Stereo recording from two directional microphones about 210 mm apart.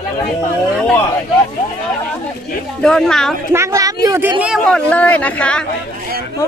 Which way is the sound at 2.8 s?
5° left (ahead or behind).